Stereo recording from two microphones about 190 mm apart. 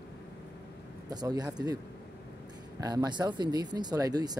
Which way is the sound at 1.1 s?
20° right (ahead or behind).